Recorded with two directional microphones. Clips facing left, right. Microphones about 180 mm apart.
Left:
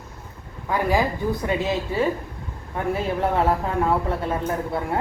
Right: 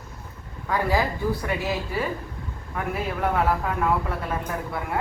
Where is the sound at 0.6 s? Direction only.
15° left (ahead or behind).